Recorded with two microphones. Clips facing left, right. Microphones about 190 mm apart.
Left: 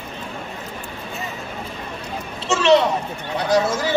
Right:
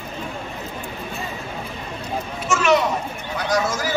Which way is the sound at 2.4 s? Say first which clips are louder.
Left 3 dB; 30° left (ahead or behind).